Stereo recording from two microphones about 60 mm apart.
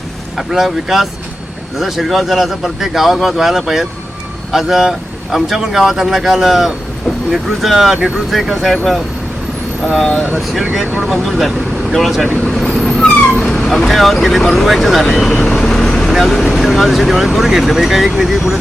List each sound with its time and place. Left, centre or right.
0.3 s speech: centre
7.9 s speech: centre
8.3 s speech: centre
9.8 s speech: centre
12.5 s vehicle: centre
12.9 s dog: centre
13.4 s speech: centre
15.4 s vehicle: centre
16.5 s speech: centre